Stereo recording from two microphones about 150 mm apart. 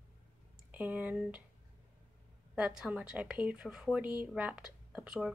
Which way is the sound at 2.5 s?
5° right (ahead or behind).